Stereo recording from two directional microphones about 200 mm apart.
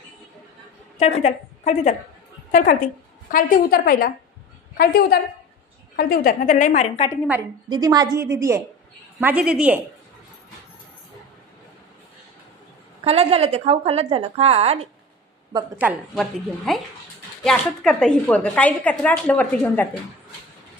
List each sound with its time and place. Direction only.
0.9 s a woman's voice: 35° left (ahead or behind)
3.3 s a woman's voice: 45° left (ahead or behind)
7.7 s a woman's voice: 20° right (ahead or behind)
13.0 s a woman's voice: 30° right (ahead or behind)
15.8 s a woman's voice: centre (ahead or behind)